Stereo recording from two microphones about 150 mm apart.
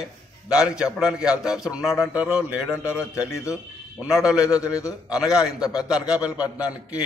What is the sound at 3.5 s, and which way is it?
A man's voice, 10° right (ahead or behind).